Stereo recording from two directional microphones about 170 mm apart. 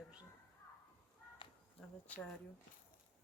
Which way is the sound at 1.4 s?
30° left (ahead or behind).